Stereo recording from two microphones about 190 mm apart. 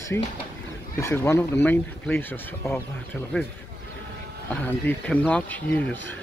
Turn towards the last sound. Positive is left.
turn(degrees=5)  # may be behind; listen again after turning